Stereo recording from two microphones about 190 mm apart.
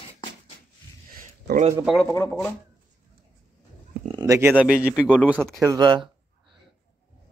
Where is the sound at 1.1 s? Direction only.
50° right (ahead or behind).